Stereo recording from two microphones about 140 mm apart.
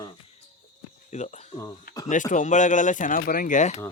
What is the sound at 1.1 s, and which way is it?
Speech, 55° left (ahead or behind).